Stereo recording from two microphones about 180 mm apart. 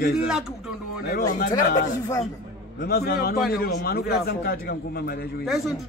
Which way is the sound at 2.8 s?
60° left (ahead or behind).